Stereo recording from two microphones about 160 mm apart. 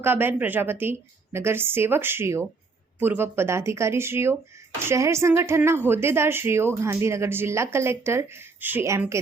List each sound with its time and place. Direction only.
0.0 s a woman's voice: 15° right (ahead or behind)